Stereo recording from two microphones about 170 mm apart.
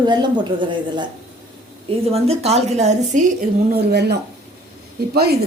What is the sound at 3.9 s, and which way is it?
Speech, 80° right.